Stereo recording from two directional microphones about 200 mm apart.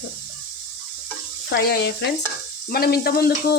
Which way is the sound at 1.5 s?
50° left (ahead or behind).